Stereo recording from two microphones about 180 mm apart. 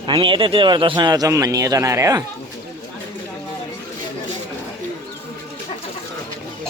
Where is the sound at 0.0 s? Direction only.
25° right (ahead or behind).